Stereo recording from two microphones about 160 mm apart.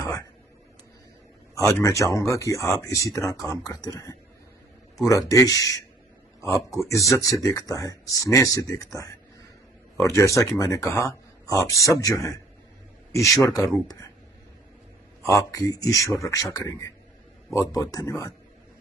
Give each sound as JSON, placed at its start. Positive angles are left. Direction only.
{"t": 1.5, "sound": "speech", "side_deg": 20}
{"t": 5.3, "sound": "speech", "side_deg": 20}
{"t": 6.8, "sound": "speech", "side_deg": 20}
{"t": 13.6, "sound": "speech", "side_deg": 0}
{"t": 13.8, "sound": "speech", "side_deg": 20}
{"t": 15.2, "sound": "speech", "side_deg": 20}